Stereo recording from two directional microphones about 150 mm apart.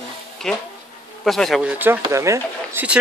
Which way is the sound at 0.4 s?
Centre (ahead or behind).